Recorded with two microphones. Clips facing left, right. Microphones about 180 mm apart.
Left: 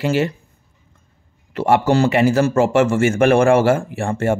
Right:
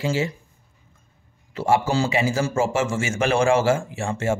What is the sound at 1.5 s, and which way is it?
A man's voice, 65° left (ahead or behind).